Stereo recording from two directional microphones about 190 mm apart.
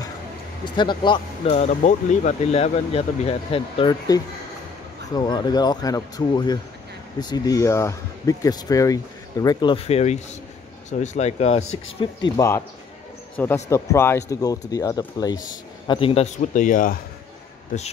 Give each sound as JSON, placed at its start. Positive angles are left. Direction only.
{"t": 0.7, "sound": "speech", "side_deg": 25}
{"t": 12.4, "sound": "speech", "side_deg": 15}
{"t": 13.7, "sound": "speech", "side_deg": 15}
{"t": 16.5, "sound": "speech", "side_deg": 45}